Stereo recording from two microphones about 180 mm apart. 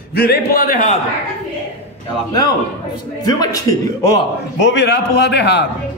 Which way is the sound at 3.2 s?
20° left (ahead or behind).